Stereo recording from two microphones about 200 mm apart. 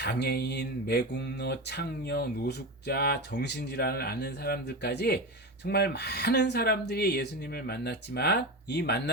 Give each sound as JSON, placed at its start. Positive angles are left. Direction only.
{"t": 0.0, "sound": "speech", "side_deg": 55}